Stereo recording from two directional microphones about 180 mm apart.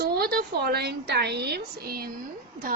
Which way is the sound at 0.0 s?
60° right (ahead or behind).